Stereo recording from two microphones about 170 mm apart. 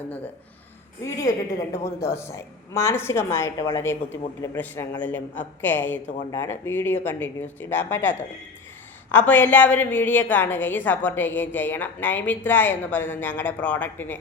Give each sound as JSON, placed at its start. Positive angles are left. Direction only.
{"t": 1.0, "sound": "a woman's voice", "side_deg": 20}
{"t": 9.1, "sound": "a woman's voice", "side_deg": 10}